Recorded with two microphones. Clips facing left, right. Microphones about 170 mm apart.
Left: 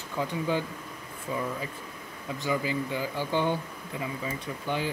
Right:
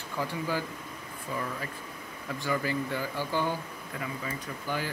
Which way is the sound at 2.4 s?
15° left (ahead or behind).